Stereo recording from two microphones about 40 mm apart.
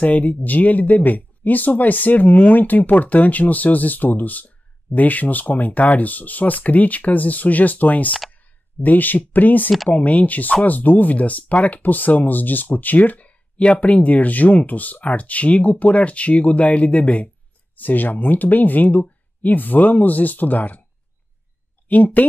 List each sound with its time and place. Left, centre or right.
0.0 s speech: left
17.7 s speech: left
21.8 s speech: left